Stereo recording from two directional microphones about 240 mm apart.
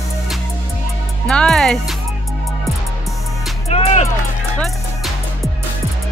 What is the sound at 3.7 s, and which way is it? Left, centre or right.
Music, left.